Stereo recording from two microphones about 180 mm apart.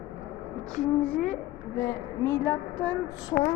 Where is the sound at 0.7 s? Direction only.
5° left (ahead or behind).